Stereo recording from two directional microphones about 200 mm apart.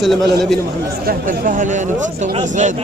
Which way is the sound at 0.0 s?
Centre (ahead or behind).